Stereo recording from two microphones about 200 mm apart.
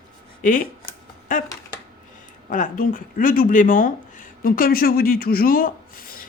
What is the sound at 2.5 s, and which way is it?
Speech, 40° left (ahead or behind).